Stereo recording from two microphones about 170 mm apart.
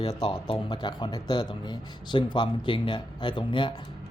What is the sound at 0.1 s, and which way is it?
Speech, 30° left (ahead or behind).